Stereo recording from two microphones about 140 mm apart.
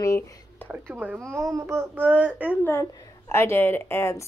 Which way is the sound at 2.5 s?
15° left (ahead or behind).